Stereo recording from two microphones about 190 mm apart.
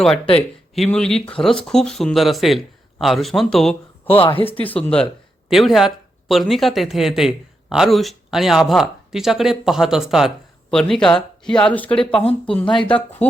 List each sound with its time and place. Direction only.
0.9 s speech: 5° left (ahead or behind)
4.0 s speech: 30° left (ahead or behind)
4.5 s speech: 10° left (ahead or behind)
12.1 s speech: 30° left (ahead or behind)